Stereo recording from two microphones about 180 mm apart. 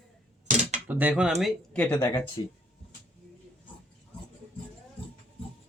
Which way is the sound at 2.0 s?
20° left (ahead or behind).